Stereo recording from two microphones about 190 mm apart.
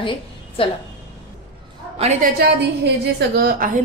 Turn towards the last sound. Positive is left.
turn(degrees=-45)  # may be behind; listen again after turning